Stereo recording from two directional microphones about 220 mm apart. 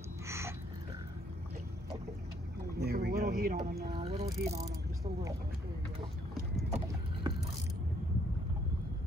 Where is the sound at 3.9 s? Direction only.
25° right (ahead or behind).